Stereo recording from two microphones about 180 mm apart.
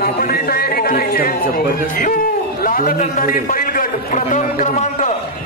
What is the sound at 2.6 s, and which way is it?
A man's voice, 50° left (ahead or behind).